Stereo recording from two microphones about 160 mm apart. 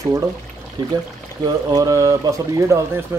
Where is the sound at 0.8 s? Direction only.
25° right (ahead or behind).